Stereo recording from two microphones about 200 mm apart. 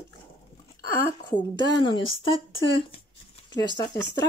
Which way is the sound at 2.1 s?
25° left (ahead or behind).